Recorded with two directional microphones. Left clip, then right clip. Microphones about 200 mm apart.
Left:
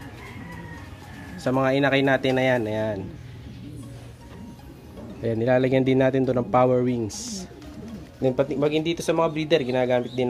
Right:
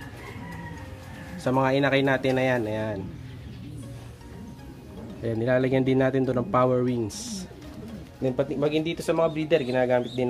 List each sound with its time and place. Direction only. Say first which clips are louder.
1.4 s a man's voice: left 1 dB; centre (ahead or behind)
5.2 s a man's voice: left 3 dB; 10° left (ahead or behind)